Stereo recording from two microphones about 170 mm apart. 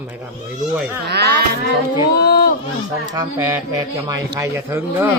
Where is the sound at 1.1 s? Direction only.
70° right (ahead or behind).